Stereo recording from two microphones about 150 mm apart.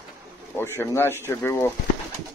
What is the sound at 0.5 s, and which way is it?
Speech, 15° left (ahead or behind).